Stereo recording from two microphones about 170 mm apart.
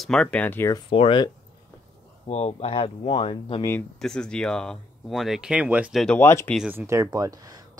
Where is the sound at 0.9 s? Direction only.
30° left (ahead or behind).